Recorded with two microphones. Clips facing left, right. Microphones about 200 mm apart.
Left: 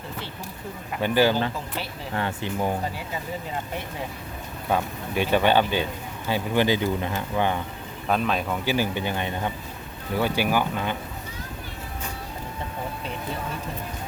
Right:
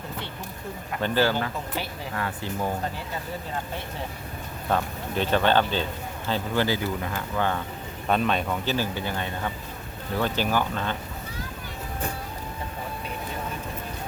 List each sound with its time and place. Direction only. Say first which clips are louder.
1.0 s speech: left 3 dB; 15° left (ahead or behind)
4.7 s speech: left 1 dB; 10° left (ahead or behind)
8.0 s speech: even; centre (ahead or behind)